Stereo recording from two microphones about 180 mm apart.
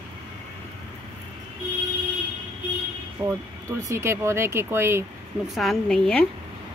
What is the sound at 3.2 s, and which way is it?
Speech, 15° right (ahead or behind).